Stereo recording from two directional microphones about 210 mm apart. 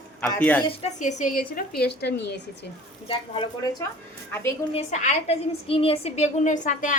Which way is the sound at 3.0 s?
25° left (ahead or behind).